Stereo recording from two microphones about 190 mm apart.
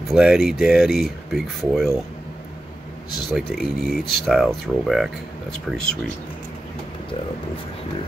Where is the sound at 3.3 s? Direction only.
Centre (ahead or behind).